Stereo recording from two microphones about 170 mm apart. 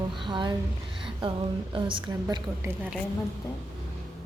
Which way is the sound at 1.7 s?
30° right (ahead or behind).